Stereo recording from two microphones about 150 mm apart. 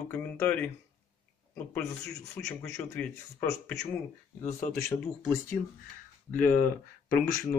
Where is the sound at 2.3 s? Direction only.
15° left (ahead or behind).